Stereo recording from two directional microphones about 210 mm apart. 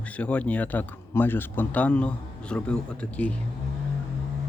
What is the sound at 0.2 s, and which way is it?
Speech, 5° left (ahead or behind).